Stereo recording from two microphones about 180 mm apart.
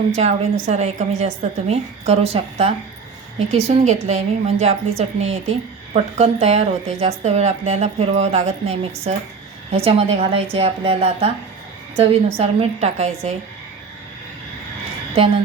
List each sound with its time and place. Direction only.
0.6 s a woman's voice: 40° right (ahead or behind)